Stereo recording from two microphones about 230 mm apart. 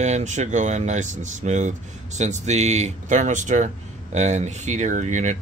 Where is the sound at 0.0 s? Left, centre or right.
Right.